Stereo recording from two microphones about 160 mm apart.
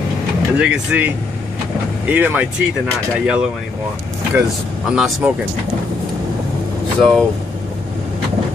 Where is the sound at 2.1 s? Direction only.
10° right (ahead or behind).